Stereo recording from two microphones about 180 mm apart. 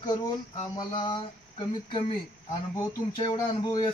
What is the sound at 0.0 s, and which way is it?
Speech, 25° left (ahead or behind).